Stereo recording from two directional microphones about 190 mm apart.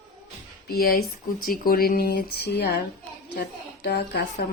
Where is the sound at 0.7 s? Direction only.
50° left (ahead or behind).